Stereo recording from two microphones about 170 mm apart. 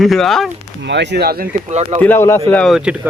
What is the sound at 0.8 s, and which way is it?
Speech, 90° right.